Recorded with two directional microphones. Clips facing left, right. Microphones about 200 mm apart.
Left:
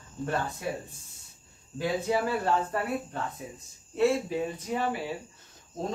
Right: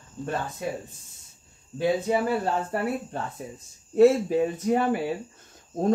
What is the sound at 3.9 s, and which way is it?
Speech, 45° right (ahead or behind).